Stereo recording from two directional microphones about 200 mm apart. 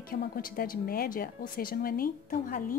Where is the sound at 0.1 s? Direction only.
45° left (ahead or behind).